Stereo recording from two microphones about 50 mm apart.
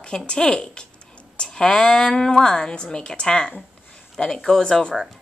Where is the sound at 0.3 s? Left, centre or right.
Centre.